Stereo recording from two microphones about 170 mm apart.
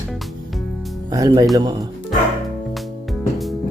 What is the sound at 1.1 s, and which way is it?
Speech, 20° right (ahead or behind).